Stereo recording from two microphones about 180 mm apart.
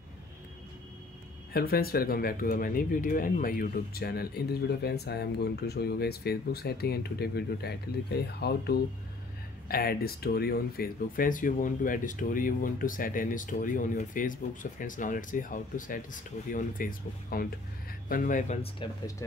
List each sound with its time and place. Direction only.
1.5 s speech: 55° left (ahead or behind)
18.8 s speech: 30° left (ahead or behind)